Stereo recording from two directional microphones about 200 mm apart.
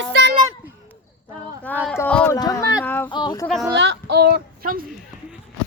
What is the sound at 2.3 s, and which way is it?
Speech, 20° left (ahead or behind).